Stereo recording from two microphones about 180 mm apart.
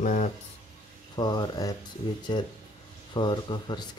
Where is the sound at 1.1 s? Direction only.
25° left (ahead or behind).